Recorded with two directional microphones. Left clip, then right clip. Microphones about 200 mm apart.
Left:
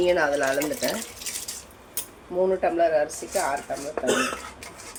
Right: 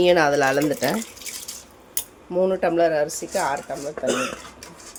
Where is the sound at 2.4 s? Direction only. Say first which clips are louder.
Right 2 dB; 50° right (ahead or behind).